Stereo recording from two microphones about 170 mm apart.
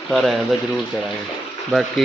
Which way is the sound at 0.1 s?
Centre (ahead or behind).